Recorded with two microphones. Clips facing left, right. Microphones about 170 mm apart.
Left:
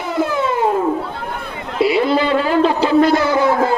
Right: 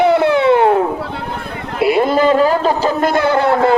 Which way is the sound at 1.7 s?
55° right (ahead or behind).